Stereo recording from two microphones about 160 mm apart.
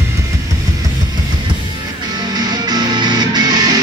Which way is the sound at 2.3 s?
25° right (ahead or behind).